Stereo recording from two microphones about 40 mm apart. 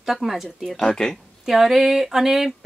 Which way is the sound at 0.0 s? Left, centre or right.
Centre.